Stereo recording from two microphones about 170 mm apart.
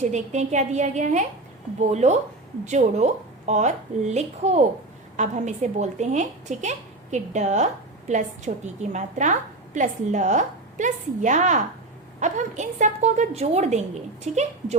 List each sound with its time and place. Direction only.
0.0 s a woman's voice: 45° right (ahead or behind)